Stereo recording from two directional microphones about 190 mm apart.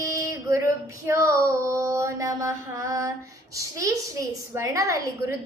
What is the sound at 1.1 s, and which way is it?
A woman's voice, 15° right (ahead or behind).